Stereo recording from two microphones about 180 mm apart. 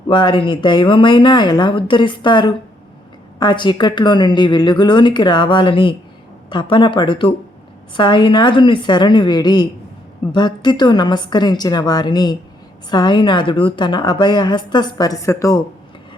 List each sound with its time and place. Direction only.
0.1 s a woman's voice: 25° left (ahead or behind)